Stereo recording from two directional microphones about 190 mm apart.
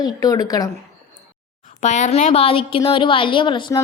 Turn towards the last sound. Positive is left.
turn(degrees=25)  # may be behind; listen again after turning